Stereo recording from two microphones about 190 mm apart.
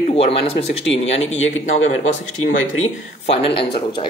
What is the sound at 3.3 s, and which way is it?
Speech, 30° left (ahead or behind).